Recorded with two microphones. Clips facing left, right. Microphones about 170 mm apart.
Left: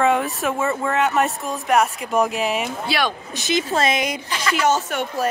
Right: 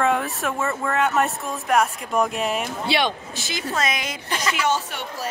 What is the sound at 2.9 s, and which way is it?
Speech, 25° right (ahead or behind).